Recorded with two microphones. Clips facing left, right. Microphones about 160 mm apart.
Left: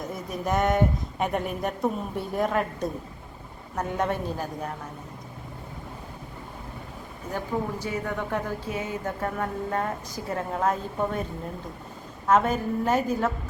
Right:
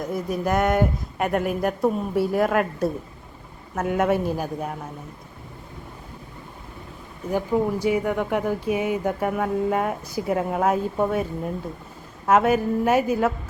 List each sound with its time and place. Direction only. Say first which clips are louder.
0.1 s speech: right 4 dB; centre (ahead or behind)
7.3 s speech: right 7 dB; 10° right (ahead or behind)
12.3 s speech: right 4 dB; 10° right (ahead or behind)